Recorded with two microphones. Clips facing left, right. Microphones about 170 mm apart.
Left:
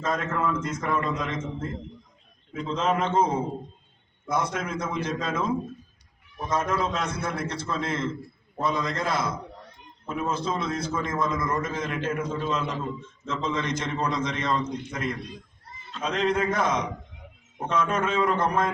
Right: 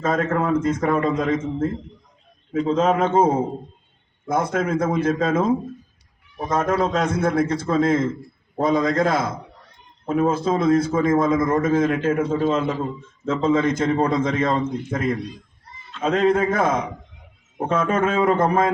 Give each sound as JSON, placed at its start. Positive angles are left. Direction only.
{"t": 0.0, "sound": "a man's voice", "side_deg": -50}